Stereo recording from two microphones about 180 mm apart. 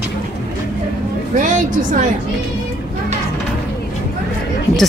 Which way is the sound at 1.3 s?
45° right (ahead or behind).